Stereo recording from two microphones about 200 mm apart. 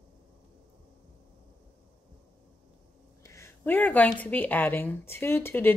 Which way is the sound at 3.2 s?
15° left (ahead or behind).